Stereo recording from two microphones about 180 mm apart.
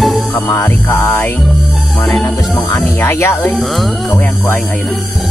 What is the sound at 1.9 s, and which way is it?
Speech, 5° left (ahead or behind).